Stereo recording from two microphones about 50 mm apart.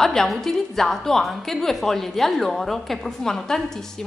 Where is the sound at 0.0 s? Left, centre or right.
Centre.